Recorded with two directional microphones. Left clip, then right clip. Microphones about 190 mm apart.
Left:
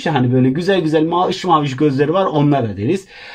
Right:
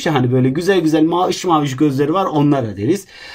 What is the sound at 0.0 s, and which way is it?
Speech, 25° left (ahead or behind).